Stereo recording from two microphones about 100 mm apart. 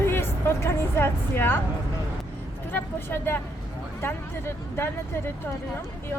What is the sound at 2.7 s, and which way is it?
A woman's voice, 20° left (ahead or behind).